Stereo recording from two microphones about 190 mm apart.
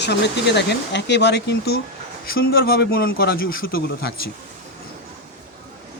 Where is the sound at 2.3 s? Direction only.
50° left (ahead or behind).